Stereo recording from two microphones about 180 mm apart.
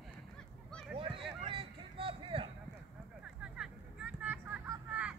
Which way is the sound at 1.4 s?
30° right (ahead or behind).